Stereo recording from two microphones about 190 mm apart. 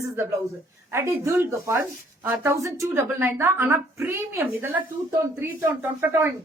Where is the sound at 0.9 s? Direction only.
15° right (ahead or behind).